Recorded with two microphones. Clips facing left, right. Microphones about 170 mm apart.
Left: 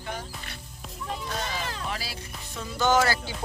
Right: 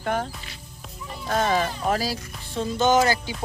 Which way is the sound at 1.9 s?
40° right (ahead or behind).